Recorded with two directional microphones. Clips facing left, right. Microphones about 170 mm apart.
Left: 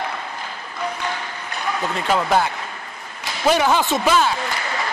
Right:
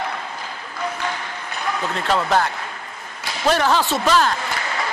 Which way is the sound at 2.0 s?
5° left (ahead or behind).